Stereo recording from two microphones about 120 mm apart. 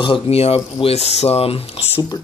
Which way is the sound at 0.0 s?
50° left (ahead or behind).